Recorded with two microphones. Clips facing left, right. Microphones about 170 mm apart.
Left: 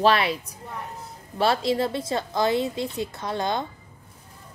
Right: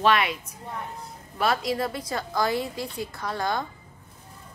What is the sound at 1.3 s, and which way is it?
A woman's voice, 30° left (ahead or behind).